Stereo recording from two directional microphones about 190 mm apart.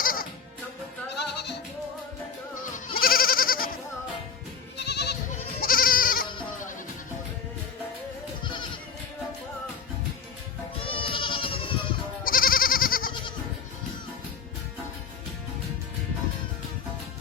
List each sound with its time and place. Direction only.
0.0 s music: 50° left (ahead or behind)
1.1 s music: 60° left (ahead or behind)
3.0 s goat: 50° left (ahead or behind)
4.8 s goat: 60° left (ahead or behind)
5.3 s goat: 50° left (ahead or behind)
8.4 s goat: 25° left (ahead or behind)
10.8 s goat: 30° left (ahead or behind)
12.2 s goat: 50° left (ahead or behind)